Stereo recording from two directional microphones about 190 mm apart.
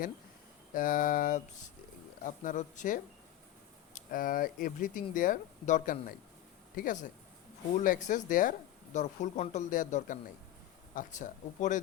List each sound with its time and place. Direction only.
0.7 s speech: 45° left (ahead or behind)